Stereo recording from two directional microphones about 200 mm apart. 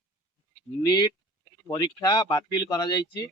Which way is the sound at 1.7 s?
20° left (ahead or behind).